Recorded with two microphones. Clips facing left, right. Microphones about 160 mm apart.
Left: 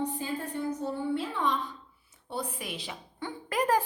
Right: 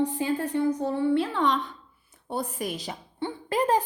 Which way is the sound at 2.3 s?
45° right (ahead or behind).